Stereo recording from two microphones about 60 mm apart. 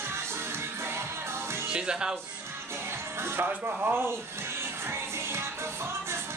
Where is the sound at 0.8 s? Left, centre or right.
Right.